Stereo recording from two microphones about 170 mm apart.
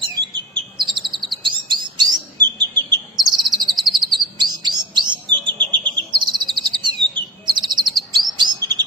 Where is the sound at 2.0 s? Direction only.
25° right (ahead or behind).